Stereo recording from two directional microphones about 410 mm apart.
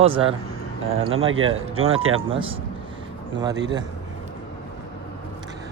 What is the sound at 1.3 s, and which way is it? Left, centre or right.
Speech, right.